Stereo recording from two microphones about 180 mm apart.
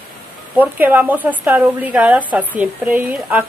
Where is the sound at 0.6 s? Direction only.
10° right (ahead or behind).